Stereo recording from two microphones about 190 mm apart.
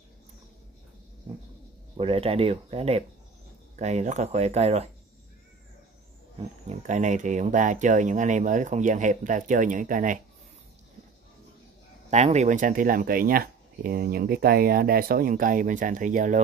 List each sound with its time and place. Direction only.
2.0 s speech: 30° right (ahead or behind)
6.7 s speech: 40° right (ahead or behind)
12.1 s speech: 35° right (ahead or behind)